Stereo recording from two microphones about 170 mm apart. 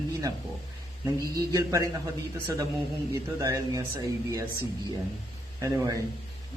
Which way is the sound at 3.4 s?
20° right (ahead or behind).